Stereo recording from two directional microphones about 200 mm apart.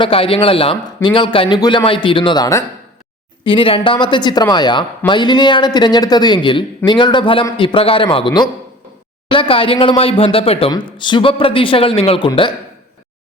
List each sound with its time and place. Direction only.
0.0 s speech: 30° left (ahead or behind)